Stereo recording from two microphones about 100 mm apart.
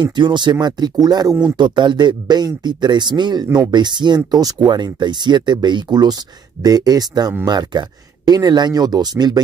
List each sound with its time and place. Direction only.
0.0 s speech: 50° right (ahead or behind)